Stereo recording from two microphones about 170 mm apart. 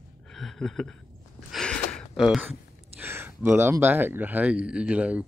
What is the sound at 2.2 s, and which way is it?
Speech, 5° right (ahead or behind).